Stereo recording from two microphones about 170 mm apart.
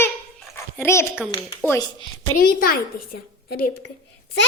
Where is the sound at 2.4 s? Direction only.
60° left (ahead or behind).